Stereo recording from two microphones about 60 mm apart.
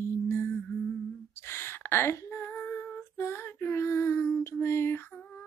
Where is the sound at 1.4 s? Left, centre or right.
Left.